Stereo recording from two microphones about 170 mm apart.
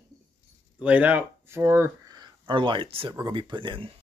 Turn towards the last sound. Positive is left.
turn(degrees=-30)  # may be behind; listen again after turning